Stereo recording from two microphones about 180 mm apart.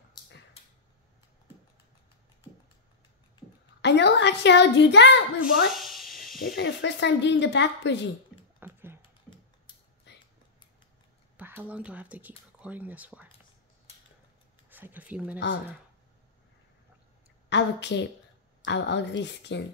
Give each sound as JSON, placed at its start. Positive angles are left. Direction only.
{"t": 3.8, "sound": "speech", "side_deg": 75}
{"t": 5.7, "sound": "a sound", "side_deg": 0}
{"t": 6.5, "sound": "speech", "side_deg": 70}
{"t": 8.5, "sound": "typing", "side_deg": -10}
{"t": 10.1, "sound": "a sound", "side_deg": 75}
{"t": 11.3, "sound": "speech", "side_deg": -10}
{"t": 14.7, "sound": "speech", "side_deg": -10}
{"t": 17.5, "sound": "speech", "side_deg": 75}